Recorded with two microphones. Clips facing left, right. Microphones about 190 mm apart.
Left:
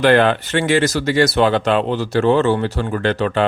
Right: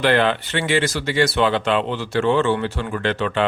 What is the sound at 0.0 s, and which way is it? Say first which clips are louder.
Speech: left 4 dB; 45° left (ahead or behind).